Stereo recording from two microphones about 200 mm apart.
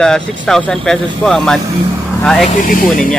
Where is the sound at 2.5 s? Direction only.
45° left (ahead or behind).